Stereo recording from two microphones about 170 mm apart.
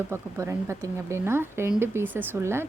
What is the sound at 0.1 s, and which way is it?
Speech, 15° right (ahead or behind).